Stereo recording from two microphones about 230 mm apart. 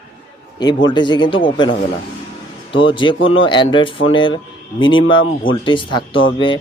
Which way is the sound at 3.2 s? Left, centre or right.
Left.